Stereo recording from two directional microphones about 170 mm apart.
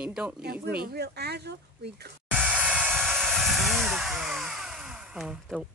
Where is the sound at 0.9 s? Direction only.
70° right (ahead or behind).